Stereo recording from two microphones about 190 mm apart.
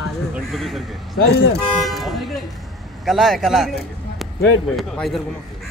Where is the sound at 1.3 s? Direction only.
60° left (ahead or behind).